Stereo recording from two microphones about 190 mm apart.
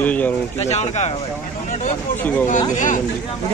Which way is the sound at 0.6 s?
35° left (ahead or behind).